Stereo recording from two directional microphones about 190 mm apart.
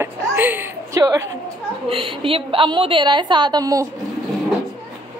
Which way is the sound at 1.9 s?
30° right (ahead or behind).